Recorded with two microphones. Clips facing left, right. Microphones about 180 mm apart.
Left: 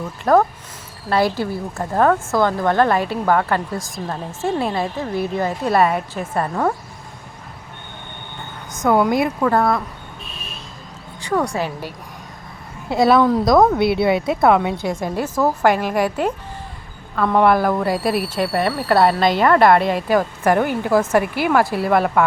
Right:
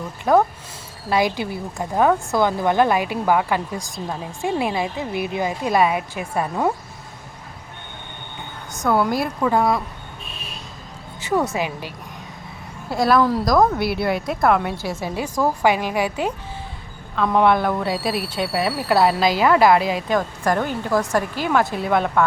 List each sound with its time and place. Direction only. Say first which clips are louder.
0.3 s speech: left 2 dB; centre (ahead or behind)
1.1 s a woman's voice: left 2 dB; 10° right (ahead or behind)
4.4 s a woman's voice: left 1 dB; 15° right (ahead or behind)
8.9 s a woman's voice: left 3 dB; 20° left (ahead or behind)
9.2 s a woman's voice: left 2 dB; 5° right (ahead or behind)
13.0 s a woman's voice: left 3 dB; centre (ahead or behind)
17.2 s speech: left 2 dB; centre (ahead or behind)